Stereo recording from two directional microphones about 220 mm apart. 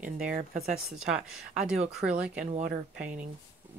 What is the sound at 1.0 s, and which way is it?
Speech, 5° right (ahead or behind).